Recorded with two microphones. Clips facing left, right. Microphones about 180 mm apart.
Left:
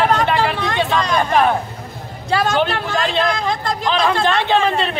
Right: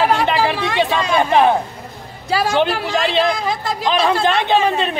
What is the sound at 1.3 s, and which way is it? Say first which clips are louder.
Speech: right 3 dB; 20° right (ahead or behind).